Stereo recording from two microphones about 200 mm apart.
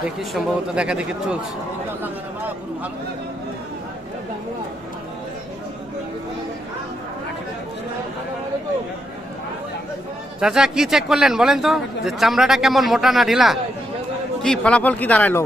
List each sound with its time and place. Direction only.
0.0 s speech: centre (ahead or behind)
10.4 s speech: 5° right (ahead or behind)